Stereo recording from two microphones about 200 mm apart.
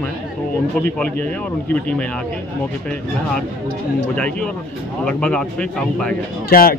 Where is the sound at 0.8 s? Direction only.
5° left (ahead or behind).